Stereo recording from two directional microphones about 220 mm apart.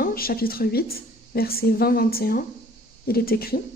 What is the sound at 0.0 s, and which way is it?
A woman's voice, 40° left (ahead or behind).